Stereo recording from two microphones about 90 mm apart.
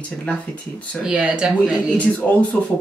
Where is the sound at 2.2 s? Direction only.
20° left (ahead or behind).